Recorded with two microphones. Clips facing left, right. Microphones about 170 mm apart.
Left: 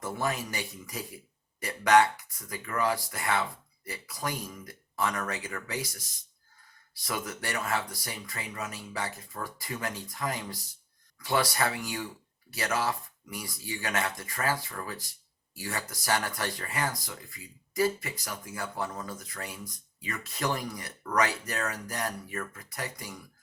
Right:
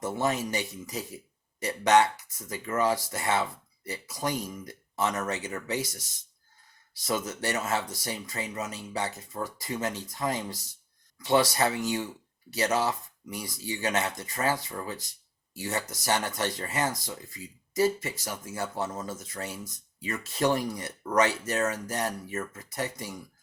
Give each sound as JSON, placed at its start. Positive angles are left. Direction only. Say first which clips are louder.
{"t": 0.0, "sound": "speech", "louder": "right 4 dB", "side_deg": -20}
{"t": 7.0, "sound": "speech", "louder": "right 5 dB", "side_deg": -20}